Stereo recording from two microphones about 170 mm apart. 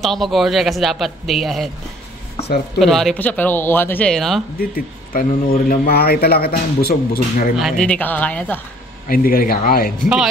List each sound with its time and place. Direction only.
0.0 s speech: centre (ahead or behind)
2.8 s speech: centre (ahead or behind)
4.6 s speech: 60° left (ahead or behind)
7.5 s speech: centre (ahead or behind)
9.0 s speech: 55° left (ahead or behind)